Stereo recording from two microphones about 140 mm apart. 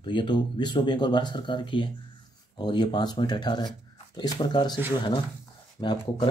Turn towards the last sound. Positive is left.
turn(degrees=35)  # may be behind; listen again after turning